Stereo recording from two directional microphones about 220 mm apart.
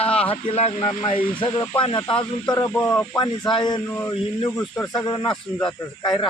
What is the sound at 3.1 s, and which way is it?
Speech, 20° left (ahead or behind).